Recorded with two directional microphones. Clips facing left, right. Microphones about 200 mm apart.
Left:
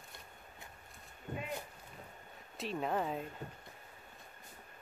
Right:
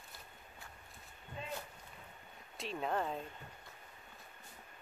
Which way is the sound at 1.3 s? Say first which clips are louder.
Left 6 dB; 45° left (ahead or behind).